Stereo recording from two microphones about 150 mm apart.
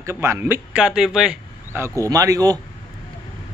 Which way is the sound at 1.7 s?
20° right (ahead or behind).